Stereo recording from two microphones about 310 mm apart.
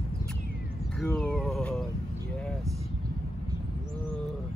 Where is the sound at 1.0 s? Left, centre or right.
Centre.